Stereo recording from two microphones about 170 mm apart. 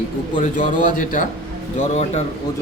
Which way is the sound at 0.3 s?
50° left (ahead or behind).